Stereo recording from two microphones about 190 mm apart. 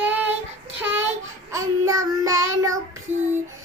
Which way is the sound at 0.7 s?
10° right (ahead or behind).